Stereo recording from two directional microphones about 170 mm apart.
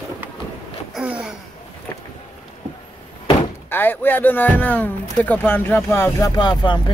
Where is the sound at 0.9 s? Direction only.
5° right (ahead or behind).